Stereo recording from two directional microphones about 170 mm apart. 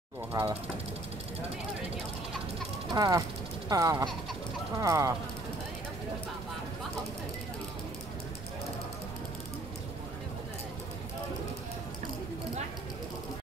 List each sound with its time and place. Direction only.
0.3 s speech: 15° right (ahead or behind)
2.9 s speech: 25° right (ahead or behind)